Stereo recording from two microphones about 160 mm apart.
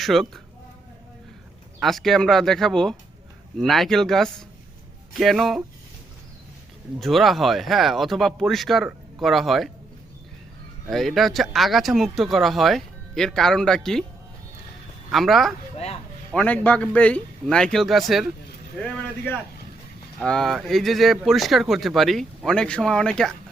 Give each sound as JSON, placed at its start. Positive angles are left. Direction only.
{"t": 0.0, "sound": "speech", "side_deg": 0}
{"t": 1.8, "sound": "speech", "side_deg": 0}
{"t": 7.0, "sound": "speech", "side_deg": 0}
{"t": 10.8, "sound": "speech", "side_deg": 0}
{"t": 15.1, "sound": "speech", "side_deg": 0}
{"t": 15.7, "sound": "speech", "side_deg": 40}
{"t": 16.3, "sound": "speech", "side_deg": 10}
{"t": 18.8, "sound": "speech", "side_deg": 10}